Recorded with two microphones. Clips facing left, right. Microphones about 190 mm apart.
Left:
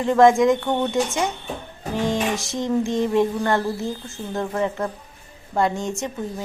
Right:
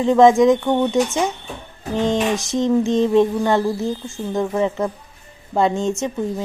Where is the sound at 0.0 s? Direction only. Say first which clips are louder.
Right 3 dB; 20° right (ahead or behind).